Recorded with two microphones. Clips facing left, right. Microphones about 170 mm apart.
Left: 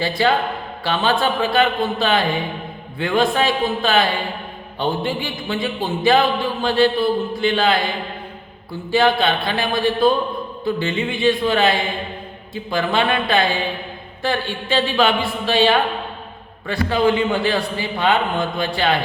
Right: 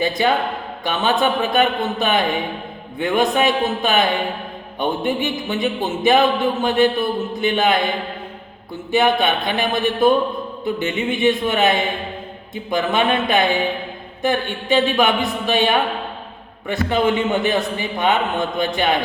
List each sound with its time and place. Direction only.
0.0 s a man's voice: 20° right (ahead or behind)
8.9 s a man's voice: 20° right (ahead or behind)